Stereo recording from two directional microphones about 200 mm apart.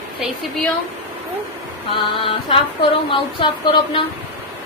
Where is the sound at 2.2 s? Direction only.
25° left (ahead or behind).